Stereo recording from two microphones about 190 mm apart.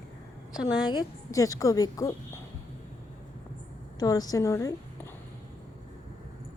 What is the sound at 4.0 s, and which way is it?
Speech, 20° left (ahead or behind).